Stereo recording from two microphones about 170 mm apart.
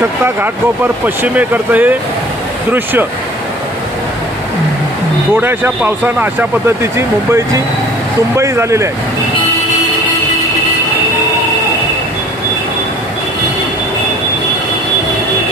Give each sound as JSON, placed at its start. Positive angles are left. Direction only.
{"t": 1.0, "sound": "speech", "side_deg": -10}
{"t": 5.4, "sound": "speech", "side_deg": -10}